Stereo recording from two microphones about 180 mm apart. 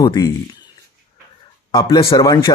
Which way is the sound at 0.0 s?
25° left (ahead or behind).